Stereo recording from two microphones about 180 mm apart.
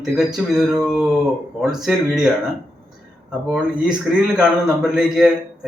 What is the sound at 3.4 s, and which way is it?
Speech, 5° right (ahead or behind).